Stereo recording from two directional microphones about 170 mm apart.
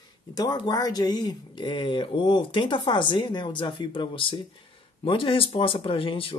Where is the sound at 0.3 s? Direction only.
25° left (ahead or behind).